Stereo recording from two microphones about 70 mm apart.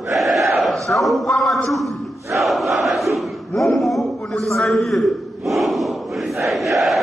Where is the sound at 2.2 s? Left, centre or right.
Right.